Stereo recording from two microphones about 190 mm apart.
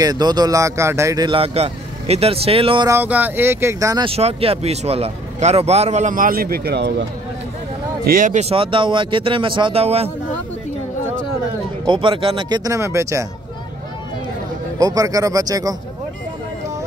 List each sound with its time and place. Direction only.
0.0 s speech: 20° right (ahead or behind)
2.9 s speech: 10° right (ahead or behind)
4.1 s speech: 30° right (ahead or behind); by 7.1 s 60° right (ahead or behind)
8.0 s speech: 45° right (ahead or behind)
11.8 s speech: 25° right (ahead or behind)
14.8 s speech: 20° right (ahead or behind)